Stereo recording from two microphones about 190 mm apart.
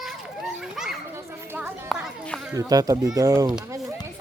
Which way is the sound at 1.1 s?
10° right (ahead or behind).